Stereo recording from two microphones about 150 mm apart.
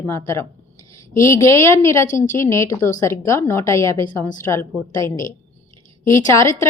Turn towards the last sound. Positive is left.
turn(degrees=20)  # may be behind; listen again after turning